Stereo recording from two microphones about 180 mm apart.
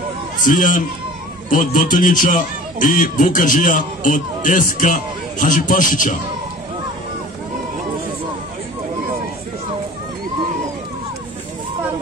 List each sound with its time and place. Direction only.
0.4 s a man's voice: 45° left (ahead or behind)